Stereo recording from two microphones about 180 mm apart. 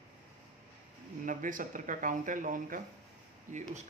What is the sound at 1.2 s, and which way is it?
Speech, 50° right (ahead or behind).